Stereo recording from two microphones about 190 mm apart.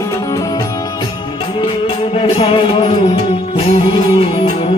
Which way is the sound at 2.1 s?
30° left (ahead or behind).